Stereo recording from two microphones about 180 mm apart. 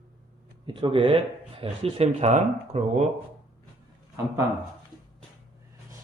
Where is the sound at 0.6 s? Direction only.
30° right (ahead or behind).